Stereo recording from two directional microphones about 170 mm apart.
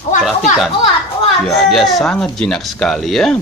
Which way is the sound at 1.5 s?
Centre (ahead or behind).